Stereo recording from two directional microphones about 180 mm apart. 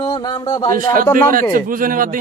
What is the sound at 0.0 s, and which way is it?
Speech, 20° left (ahead or behind).